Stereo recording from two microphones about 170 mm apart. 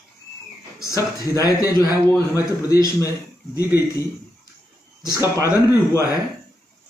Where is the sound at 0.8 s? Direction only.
20° left (ahead or behind).